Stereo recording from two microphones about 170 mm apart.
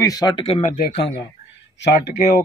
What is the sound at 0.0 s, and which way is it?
Speech, 20° left (ahead or behind).